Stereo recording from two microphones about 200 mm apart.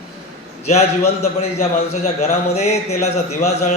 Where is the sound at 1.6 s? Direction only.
35° left (ahead or behind).